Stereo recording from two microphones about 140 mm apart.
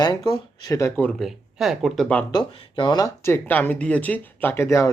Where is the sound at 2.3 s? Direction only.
35° left (ahead or behind).